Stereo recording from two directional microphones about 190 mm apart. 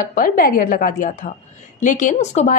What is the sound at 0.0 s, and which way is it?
A woman's voice, 45° left (ahead or behind).